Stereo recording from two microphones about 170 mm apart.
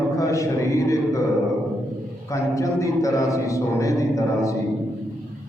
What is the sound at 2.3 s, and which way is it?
A man's voice, 20° left (ahead or behind).